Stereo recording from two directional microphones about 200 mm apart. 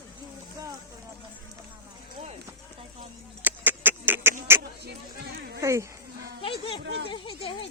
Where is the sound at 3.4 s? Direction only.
10° right (ahead or behind).